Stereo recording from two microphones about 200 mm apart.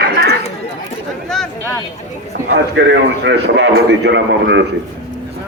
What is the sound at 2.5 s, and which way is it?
A man's voice, 65° right (ahead or behind).